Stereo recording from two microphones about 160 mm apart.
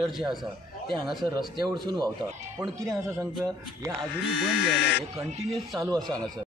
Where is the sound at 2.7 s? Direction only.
20° right (ahead or behind).